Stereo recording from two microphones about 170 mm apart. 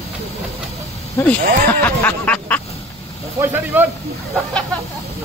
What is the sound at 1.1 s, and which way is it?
Speech, 10° left (ahead or behind).